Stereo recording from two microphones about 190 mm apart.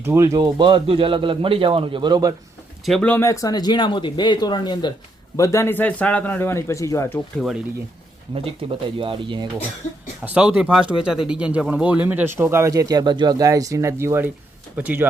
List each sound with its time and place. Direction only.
0.0 s speech: 15° right (ahead or behind)
2.8 s a man's voice: 5° left (ahead or behind)
9.0 s speech: 25° right (ahead or behind)
10.2 s speech: 5° right (ahead or behind)